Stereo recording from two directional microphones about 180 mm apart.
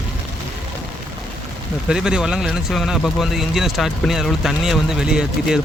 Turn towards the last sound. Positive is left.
turn(degrees=-5)  # may be behind; listen again after turning